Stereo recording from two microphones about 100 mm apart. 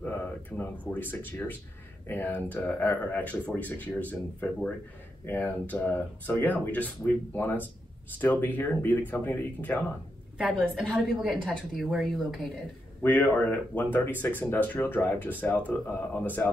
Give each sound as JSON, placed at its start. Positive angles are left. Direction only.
{"t": 0.0, "sound": "a sound", "side_deg": 20}
{"t": 0.9, "sound": "speech", "side_deg": 20}
{"t": 10.9, "sound": "a woman's voice", "side_deg": 0}
{"t": 13.0, "sound": "speech", "side_deg": 20}